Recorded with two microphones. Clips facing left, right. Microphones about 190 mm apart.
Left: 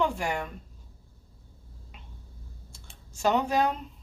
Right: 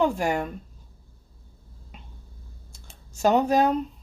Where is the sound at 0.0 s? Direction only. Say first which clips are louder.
Right 5 dB; 40° right (ahead or behind).